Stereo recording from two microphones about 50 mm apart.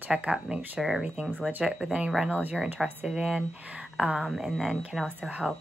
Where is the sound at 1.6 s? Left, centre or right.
Centre.